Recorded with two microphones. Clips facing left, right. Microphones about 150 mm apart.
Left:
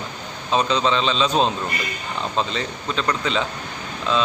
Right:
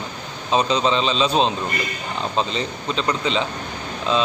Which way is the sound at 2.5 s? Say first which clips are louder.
Right 1 dB; 30° right (ahead or behind).